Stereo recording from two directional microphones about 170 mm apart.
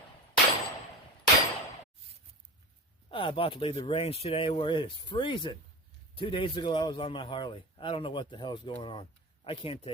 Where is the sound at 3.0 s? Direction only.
30° left (ahead or behind).